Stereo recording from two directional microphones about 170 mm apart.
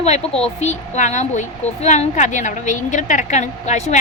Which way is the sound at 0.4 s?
40° left (ahead or behind).